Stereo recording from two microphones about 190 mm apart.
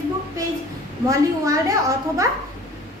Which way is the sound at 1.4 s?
15° right (ahead or behind).